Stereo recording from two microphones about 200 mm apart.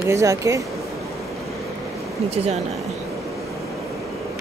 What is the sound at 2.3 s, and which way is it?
Speech, 30° right (ahead or behind).